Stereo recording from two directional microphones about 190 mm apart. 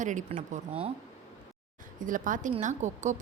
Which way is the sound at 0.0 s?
40° right (ahead or behind).